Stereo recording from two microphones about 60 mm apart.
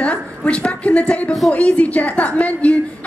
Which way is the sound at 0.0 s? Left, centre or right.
Centre.